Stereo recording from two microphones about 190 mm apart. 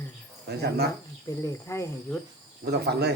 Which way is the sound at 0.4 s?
60° right (ahead or behind).